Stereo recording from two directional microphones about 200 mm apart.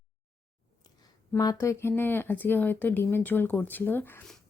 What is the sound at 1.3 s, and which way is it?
Speech, 15° left (ahead or behind).